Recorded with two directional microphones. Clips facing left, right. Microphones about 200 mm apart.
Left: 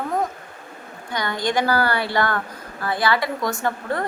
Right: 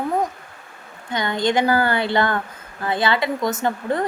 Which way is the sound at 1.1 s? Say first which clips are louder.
Right 3 dB; 20° right (ahead or behind).